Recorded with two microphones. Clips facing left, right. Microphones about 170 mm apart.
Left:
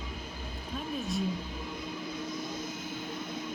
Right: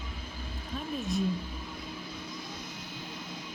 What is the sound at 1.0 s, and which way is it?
Speech, centre (ahead or behind).